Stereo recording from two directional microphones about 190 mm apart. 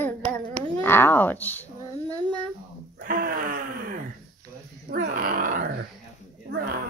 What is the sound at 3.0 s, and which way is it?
Gasp, 50° right (ahead or behind).